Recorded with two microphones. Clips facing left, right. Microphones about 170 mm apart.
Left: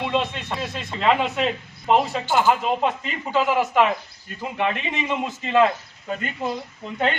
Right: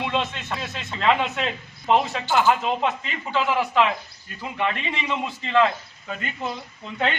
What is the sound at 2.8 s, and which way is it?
Speech, 45° left (ahead or behind).